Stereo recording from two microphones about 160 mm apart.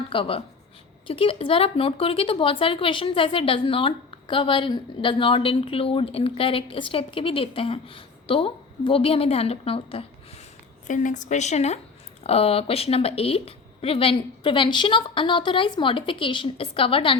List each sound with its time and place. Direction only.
0.1 s speech: 35° left (ahead or behind)
10.8 s speech: 50° left (ahead or behind); by 17.2 s 35° left (ahead or behind)